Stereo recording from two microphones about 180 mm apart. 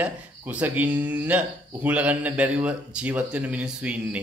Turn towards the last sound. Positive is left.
turn(degrees=-5)  # may be behind; listen again after turning